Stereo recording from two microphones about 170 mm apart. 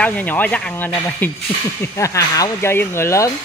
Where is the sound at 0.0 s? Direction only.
10° left (ahead or behind).